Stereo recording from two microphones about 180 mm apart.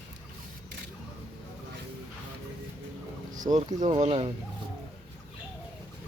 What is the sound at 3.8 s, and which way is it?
Speech, 35° right (ahead or behind).